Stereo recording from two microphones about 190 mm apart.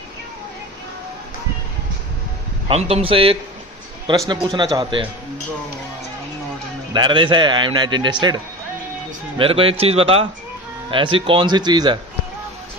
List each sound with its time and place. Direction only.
2.7 s a man's voice: 30° right (ahead or behind)
6.9 s a man's voice: 25° right (ahead or behind)
9.4 s a man's voice: 30° right (ahead or behind)